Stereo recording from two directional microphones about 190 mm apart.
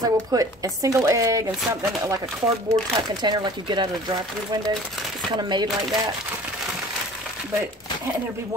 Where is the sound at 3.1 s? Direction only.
20° right (ahead or behind).